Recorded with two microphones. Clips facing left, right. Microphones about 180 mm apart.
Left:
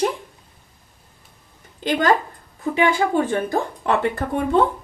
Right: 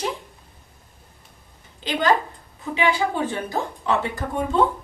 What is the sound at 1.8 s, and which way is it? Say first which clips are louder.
A woman's voice: left 2 dB; 45° left (ahead or behind).